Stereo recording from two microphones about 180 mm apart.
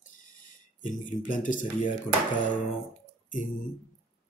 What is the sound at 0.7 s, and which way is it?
Speech, 45° left (ahead or behind).